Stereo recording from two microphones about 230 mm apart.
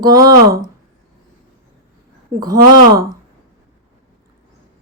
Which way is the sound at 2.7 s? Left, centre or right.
Centre.